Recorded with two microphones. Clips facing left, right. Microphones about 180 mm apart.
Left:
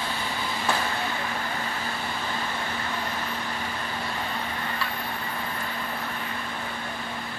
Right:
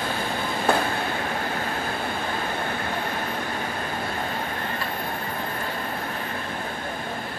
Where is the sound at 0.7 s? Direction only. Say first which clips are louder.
Right 6 dB; 55° right (ahead or behind).